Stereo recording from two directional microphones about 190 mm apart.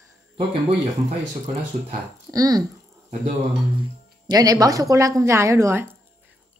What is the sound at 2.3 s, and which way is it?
Speech, 20° right (ahead or behind).